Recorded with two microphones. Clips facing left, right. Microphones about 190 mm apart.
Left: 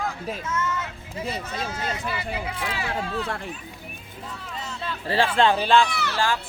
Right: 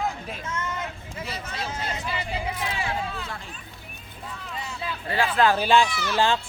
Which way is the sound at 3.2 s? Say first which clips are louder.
Left 6 dB; 65° left (ahead or behind).